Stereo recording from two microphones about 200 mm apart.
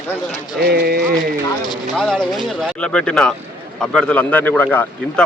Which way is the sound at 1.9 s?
Centre (ahead or behind).